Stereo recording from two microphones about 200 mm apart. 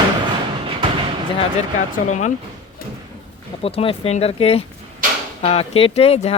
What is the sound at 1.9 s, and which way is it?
Speech, 35° left (ahead or behind).